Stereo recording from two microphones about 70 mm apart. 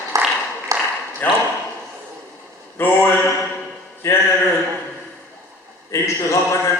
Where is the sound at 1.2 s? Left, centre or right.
Left.